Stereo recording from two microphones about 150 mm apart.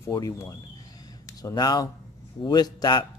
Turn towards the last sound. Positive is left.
turn(degrees=30)  # may be behind; listen again after turning